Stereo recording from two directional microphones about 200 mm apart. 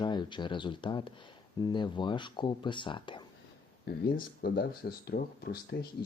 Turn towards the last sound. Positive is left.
turn(degrees=50)  # may be behind; listen again after turning